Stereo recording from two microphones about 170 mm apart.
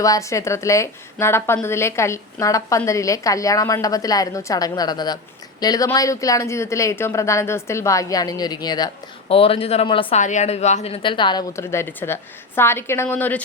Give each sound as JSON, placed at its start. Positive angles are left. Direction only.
{"t": 0.0, "sound": "a woman's voice", "side_deg": 20}
{"t": 10.2, "sound": "a woman's voice", "side_deg": 45}
{"t": 11.5, "sound": "a woman's voice", "side_deg": 15}